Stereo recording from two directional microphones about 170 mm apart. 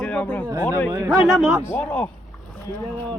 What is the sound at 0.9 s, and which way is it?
Speech, 15° right (ahead or behind).